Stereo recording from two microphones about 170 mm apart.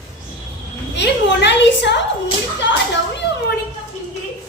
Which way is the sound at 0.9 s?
90° left.